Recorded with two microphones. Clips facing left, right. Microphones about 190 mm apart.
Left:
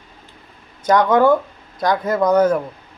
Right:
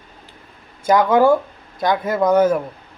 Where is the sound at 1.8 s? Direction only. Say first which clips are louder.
Even; 25° right (ahead or behind).